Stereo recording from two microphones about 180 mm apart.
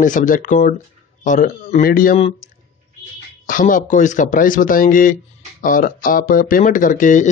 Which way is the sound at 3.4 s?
50° left (ahead or behind).